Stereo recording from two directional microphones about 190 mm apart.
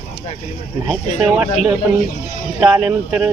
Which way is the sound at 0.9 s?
5° right (ahead or behind).